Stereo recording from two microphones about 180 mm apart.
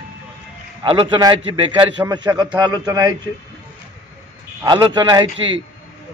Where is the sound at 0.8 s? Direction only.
30° right (ahead or behind).